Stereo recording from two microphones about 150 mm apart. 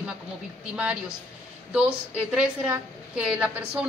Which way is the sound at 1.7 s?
5° right (ahead or behind).